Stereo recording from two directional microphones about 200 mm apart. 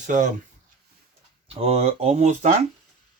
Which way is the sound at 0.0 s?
40° right (ahead or behind).